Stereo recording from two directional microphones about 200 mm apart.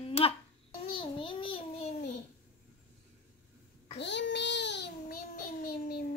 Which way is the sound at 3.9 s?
60° left (ahead or behind).